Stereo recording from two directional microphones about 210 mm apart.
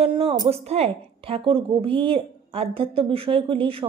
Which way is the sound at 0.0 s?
25° right (ahead or behind).